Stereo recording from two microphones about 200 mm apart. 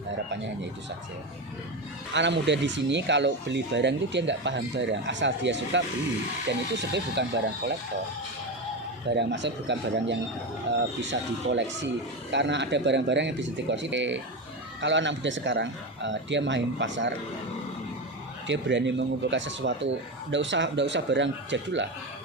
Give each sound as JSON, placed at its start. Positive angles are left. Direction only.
{"t": 2.1, "sound": "speech", "side_deg": -60}
{"t": 9.0, "sound": "speech", "side_deg": -60}
{"t": 18.4, "sound": "speech", "side_deg": -65}